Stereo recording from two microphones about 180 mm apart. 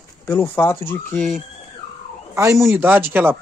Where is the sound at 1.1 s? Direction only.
Centre (ahead or behind).